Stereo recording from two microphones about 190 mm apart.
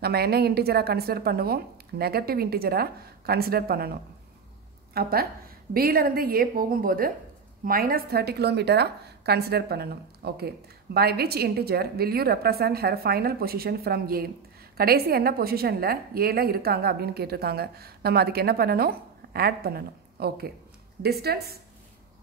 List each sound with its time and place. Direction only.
0.0 s a woman's voice: 55° right (ahead or behind)
4.9 s a woman's voice: 55° right (ahead or behind)